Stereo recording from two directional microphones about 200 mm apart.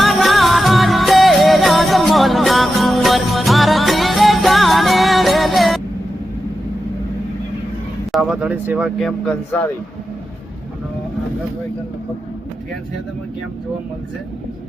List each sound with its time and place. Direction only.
0.0 s music: centre (ahead or behind)
8.1 s speech: 5° right (ahead or behind)